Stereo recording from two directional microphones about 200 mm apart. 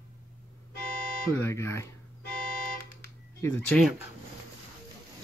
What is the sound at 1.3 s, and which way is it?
Speech, 15° left (ahead or behind).